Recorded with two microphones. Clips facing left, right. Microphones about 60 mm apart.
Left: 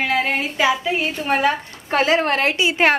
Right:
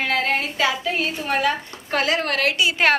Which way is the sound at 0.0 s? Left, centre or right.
Centre.